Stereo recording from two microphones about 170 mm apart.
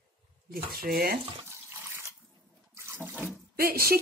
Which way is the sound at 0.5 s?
60° right (ahead or behind).